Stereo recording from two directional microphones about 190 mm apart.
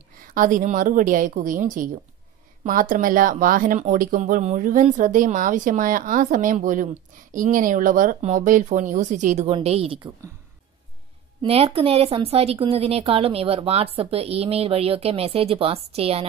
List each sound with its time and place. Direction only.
0.3 s a woman's voice: 45° right (ahead or behind)
11.4 s a woman's voice: 30° right (ahead or behind)